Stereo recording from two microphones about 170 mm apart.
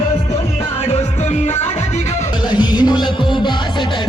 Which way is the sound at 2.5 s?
25° left (ahead or behind).